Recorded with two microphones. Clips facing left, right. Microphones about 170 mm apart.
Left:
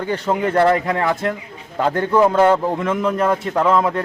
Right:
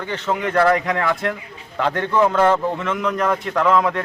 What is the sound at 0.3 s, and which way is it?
A man's voice, 30° left (ahead or behind).